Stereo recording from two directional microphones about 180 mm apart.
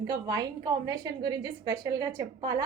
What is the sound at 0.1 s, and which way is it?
A woman's voice, 20° right (ahead or behind).